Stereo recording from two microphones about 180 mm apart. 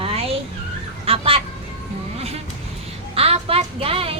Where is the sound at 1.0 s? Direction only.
30° right (ahead or behind).